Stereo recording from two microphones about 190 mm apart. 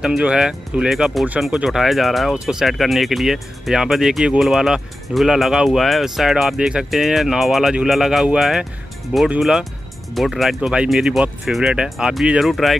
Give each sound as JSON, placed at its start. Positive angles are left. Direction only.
{"t": 0.0, "sound": "speech", "side_deg": -5}